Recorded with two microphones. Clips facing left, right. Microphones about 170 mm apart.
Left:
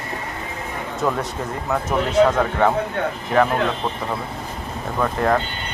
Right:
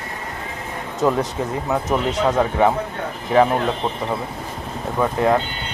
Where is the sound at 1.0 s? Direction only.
15° right (ahead or behind).